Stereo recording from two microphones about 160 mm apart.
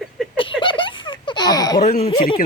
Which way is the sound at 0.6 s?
30° left (ahead or behind).